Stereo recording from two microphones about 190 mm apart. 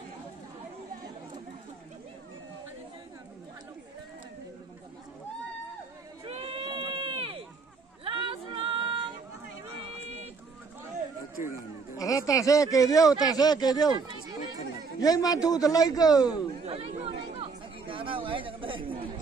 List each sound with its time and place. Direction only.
6.2 s run: 30° right (ahead or behind)
8.0 s a sound: 25° right (ahead or behind)
9.9 s run: 35° right (ahead or behind)
11.9 s speech: 15° left (ahead or behind)
15.0 s a man's voice: 20° left (ahead or behind)
16.6 s chatter: 30° right (ahead or behind)